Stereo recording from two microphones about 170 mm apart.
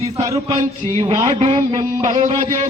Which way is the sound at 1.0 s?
25° right (ahead or behind).